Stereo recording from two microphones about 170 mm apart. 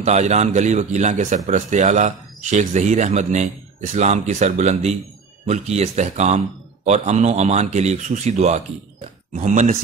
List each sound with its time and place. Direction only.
0.0 s a man's voice: 40° right (ahead or behind)